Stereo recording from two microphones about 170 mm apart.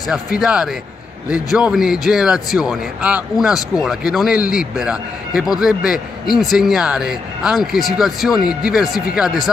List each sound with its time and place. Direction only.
0.1 s a man's voice: 5° right (ahead or behind)